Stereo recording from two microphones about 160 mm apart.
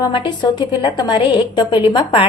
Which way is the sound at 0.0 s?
30° left (ahead or behind).